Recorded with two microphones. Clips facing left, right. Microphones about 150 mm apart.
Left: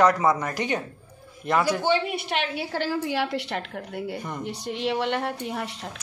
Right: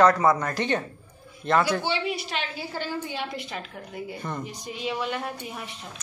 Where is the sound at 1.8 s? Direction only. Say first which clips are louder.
Left 4 dB; 50° left (ahead or behind); by 5.9 s 80° left.